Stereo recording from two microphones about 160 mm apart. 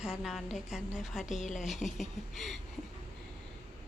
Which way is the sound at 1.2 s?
50° left (ahead or behind).